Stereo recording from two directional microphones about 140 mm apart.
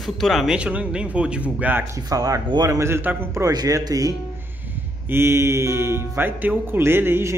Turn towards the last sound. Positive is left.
turn(degrees=-15)  # may be behind; listen again after turning